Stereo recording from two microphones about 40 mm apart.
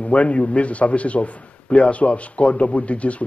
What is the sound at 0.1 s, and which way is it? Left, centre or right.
A man's voice, left.